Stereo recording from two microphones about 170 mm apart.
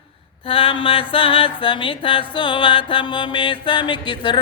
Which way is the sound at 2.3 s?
30° left (ahead or behind).